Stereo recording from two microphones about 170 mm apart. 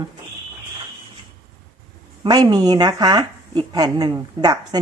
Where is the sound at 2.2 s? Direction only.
25° right (ahead or behind).